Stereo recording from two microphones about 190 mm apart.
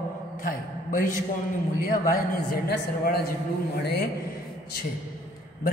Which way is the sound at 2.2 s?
55° left (ahead or behind).